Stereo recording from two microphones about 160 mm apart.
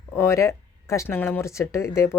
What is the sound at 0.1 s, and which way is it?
Speech, 20° left (ahead or behind).